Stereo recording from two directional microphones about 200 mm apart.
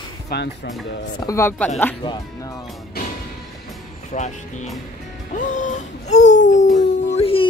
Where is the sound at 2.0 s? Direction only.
20° left (ahead or behind).